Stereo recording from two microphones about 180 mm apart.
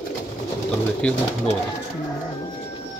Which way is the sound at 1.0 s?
5° left (ahead or behind).